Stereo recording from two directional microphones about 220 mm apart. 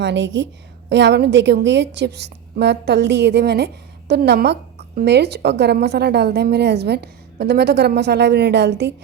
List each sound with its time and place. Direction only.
0.0 s a woman's voice: 55° right (ahead or behind)